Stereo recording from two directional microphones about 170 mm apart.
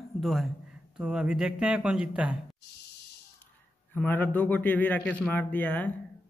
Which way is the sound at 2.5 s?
75° left (ahead or behind).